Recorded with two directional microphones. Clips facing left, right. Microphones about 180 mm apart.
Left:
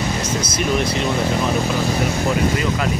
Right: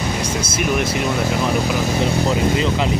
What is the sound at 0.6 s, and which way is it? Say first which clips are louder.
Speech: even; 10° right (ahead or behind).